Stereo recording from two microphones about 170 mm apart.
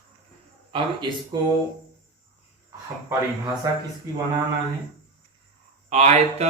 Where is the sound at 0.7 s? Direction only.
25° right (ahead or behind).